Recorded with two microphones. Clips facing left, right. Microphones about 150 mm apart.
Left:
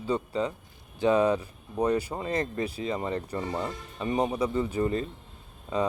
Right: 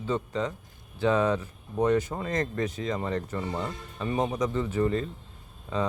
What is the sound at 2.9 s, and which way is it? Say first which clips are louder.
Speech: even; 10° left (ahead or behind).